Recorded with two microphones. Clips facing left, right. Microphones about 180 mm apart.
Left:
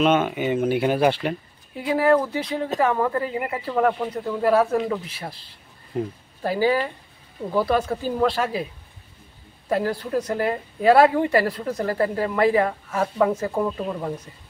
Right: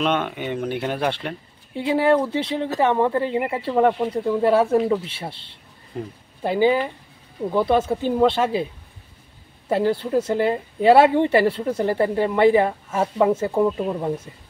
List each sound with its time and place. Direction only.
0.0 s speech: 5° left (ahead or behind)
1.8 s speech: 25° right (ahead or behind)
9.7 s speech: 25° right (ahead or behind)